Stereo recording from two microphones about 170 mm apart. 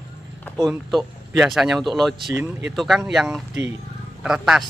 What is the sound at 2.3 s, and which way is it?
Speech, 10° right (ahead or behind).